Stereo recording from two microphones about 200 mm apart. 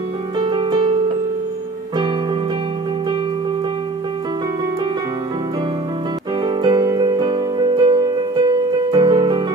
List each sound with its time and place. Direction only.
0.4 s music: 25° right (ahead or behind)
6.4 s music: 20° right (ahead or behind)